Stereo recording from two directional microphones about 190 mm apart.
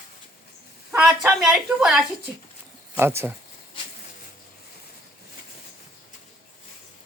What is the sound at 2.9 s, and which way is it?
Speech, 10° right (ahead or behind).